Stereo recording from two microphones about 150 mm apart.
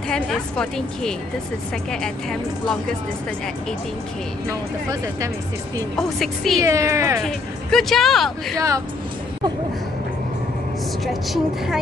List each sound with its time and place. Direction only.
0.1 s speech: 5° left (ahead or behind)
5.9 s speech: centre (ahead or behind)
6.6 s speech: 20° right (ahead or behind)
7.2 s speech: centre (ahead or behind)
8.5 s speech: 20° right (ahead or behind)
11.3 s speech: centre (ahead or behind)